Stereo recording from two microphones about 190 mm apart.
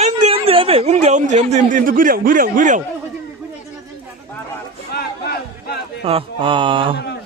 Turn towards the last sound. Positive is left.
turn(degrees=-25)  # may be behind; listen again after turning